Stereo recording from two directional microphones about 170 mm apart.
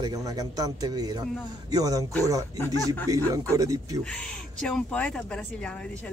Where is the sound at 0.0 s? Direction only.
20° right (ahead or behind).